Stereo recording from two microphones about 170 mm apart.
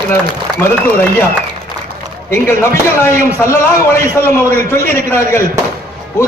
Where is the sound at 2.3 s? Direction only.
15° left (ahead or behind).